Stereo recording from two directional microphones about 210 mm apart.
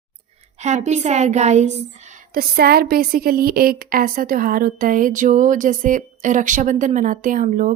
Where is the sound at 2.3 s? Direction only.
45° right (ahead or behind).